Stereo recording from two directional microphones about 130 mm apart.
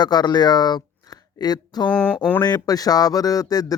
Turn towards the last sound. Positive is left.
turn(degrees=30)  # may be behind; listen again after turning